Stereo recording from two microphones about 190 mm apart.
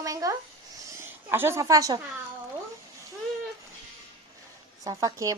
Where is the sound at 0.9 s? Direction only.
10° right (ahead or behind).